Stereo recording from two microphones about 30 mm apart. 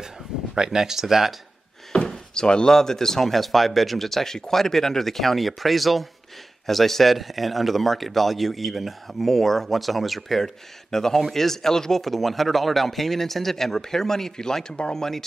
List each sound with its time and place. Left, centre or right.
0.6 s speech: centre
2.0 s door: left
2.7 s speech: centre
9.3 s speech: centre